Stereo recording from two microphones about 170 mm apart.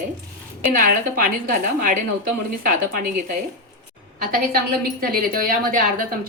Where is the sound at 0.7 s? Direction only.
55° right (ahead or behind).